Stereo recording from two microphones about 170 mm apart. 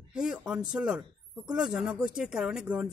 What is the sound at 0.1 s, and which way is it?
Speech, 5° right (ahead or behind).